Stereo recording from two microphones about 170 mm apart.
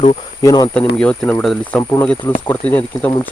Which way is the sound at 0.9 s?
5° left (ahead or behind).